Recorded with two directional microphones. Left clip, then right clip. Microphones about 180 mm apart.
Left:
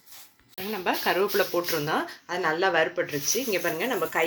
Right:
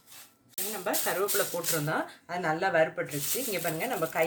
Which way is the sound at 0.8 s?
40° left (ahead or behind).